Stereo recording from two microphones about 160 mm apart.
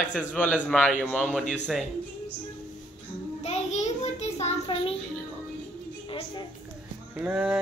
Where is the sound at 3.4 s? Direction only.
45° left (ahead or behind).